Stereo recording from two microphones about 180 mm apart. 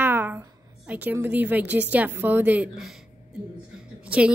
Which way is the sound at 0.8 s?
10° right (ahead or behind).